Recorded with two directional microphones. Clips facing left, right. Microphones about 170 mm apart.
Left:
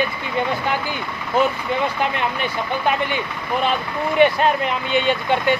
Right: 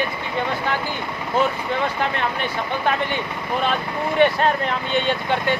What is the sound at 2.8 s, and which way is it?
Speech, 10° left (ahead or behind).